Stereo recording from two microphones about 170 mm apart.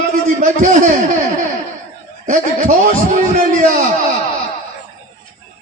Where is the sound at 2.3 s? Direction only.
50° right (ahead or behind).